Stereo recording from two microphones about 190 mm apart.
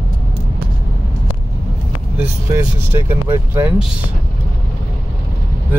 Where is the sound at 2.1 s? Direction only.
10° right (ahead or behind).